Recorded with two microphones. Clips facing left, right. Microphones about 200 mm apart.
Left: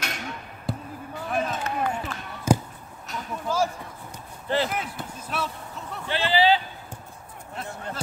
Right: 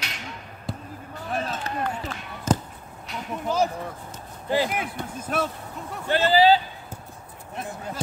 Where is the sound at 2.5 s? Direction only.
10° left (ahead or behind).